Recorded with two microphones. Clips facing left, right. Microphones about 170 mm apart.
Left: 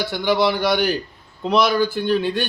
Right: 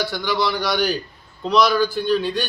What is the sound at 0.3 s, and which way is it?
A man's voice, 55° left (ahead or behind).